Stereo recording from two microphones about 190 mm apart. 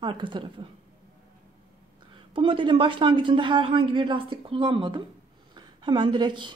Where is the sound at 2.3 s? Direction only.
25° right (ahead or behind).